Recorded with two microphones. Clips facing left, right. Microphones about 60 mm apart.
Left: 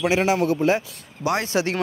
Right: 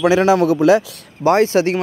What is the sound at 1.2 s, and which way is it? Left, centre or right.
Speech, right.